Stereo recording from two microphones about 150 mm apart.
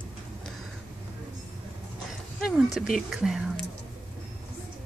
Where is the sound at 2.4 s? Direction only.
Centre (ahead or behind).